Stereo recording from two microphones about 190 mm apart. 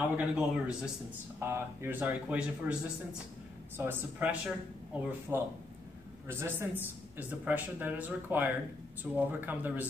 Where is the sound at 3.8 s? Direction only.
10° right (ahead or behind).